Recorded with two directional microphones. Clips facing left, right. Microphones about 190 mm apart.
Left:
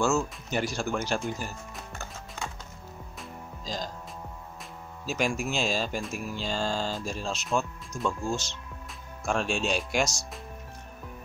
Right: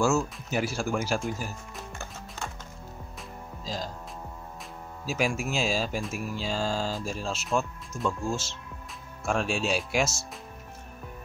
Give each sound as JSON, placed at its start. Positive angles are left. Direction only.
{"t": 0.0, "sound": "speech", "side_deg": -5}
{"t": 3.2, "sound": "music", "side_deg": -5}
{"t": 5.0, "sound": "speech", "side_deg": -5}